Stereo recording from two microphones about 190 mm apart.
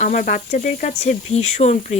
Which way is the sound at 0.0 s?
40° left (ahead or behind).